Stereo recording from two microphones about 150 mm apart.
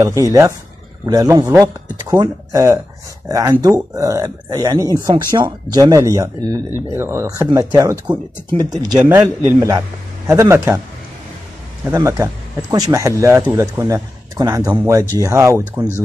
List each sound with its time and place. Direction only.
0.0 s speech: 20° right (ahead or behind)
11.8 s speech: 20° right (ahead or behind)